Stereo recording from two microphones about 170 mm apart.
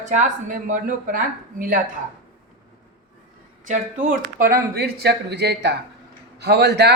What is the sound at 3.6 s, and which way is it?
Speech, 45° right (ahead or behind).